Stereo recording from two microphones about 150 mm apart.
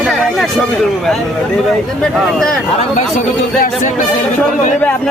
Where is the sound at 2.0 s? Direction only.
5° left (ahead or behind).